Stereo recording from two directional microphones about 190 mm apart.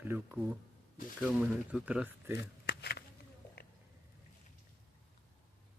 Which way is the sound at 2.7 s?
60° left (ahead or behind).